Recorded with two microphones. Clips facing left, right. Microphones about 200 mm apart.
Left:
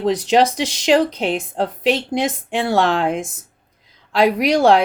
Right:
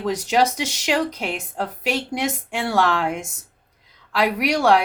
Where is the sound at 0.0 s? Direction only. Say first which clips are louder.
Left 4 dB; 30° left (ahead or behind).